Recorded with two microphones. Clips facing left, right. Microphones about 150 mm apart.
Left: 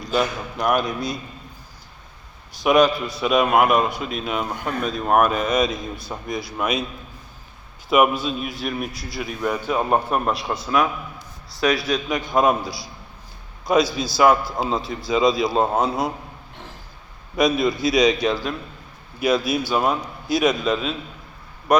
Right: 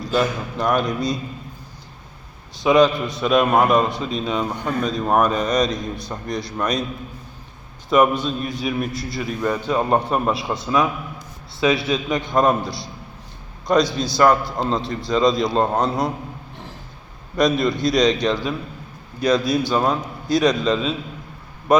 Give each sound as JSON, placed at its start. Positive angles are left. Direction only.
{"t": 0.1, "sound": "a man's voice", "side_deg": 5}
{"t": 2.6, "sound": "a man's voice", "side_deg": 5}
{"t": 7.9, "sound": "a man's voice", "side_deg": 5}
{"t": 11.6, "sound": "a man's voice", "side_deg": -25}
{"t": 11.9, "sound": "a man's voice", "side_deg": 0}
{"t": 17.3, "sound": "a man's voice", "side_deg": 5}